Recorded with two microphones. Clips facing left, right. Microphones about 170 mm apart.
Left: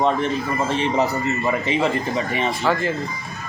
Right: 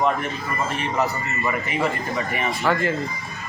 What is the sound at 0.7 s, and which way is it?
A man's voice, 25° left (ahead or behind).